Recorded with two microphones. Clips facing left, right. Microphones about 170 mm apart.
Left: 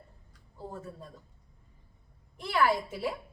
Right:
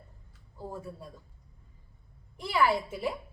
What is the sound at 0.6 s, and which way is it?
Speech, 10° right (ahead or behind).